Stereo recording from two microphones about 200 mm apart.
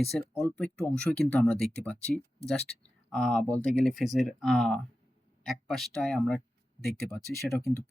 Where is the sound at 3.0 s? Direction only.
5° left (ahead or behind).